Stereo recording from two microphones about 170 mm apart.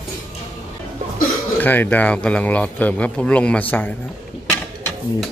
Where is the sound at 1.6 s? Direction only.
10° left (ahead or behind).